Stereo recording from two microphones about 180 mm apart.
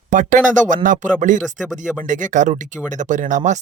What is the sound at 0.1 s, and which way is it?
Speech, 45° right (ahead or behind).